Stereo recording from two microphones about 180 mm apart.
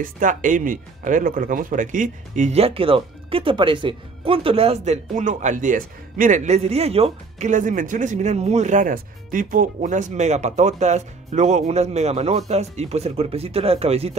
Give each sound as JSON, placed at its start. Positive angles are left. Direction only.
{"t": 0.0, "sound": "speech", "side_deg": -45}